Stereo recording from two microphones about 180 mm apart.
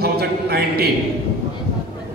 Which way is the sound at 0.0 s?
65° right (ahead or behind).